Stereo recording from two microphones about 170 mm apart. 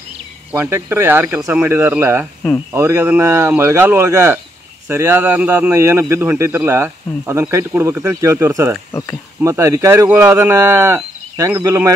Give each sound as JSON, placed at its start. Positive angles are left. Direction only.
{"t": 0.5, "sound": "speech", "side_deg": -15}